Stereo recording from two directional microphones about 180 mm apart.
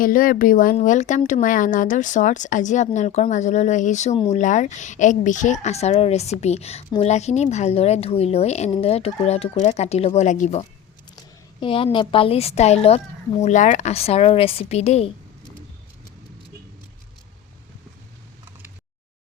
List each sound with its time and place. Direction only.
0.0 s a woman's voice: 50° left (ahead or behind)
11.6 s a woman's voice: 30° left (ahead or behind)